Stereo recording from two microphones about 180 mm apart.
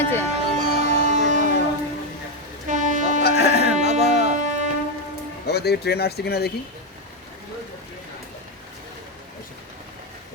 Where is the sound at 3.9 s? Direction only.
40° right (ahead or behind).